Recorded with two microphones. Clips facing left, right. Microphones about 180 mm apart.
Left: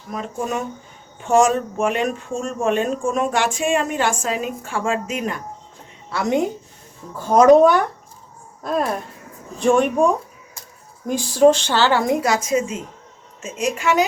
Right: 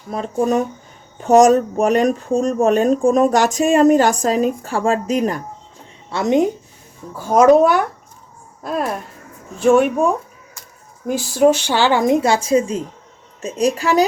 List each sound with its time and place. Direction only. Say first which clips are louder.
0.1 s speech: right 7 dB; 35° right (ahead or behind)
6.1 s a woman's voice: right 4 dB; 20° right (ahead or behind)
7.2 s speech: even; 10° right (ahead or behind); by 14.0 s 35° right (ahead or behind)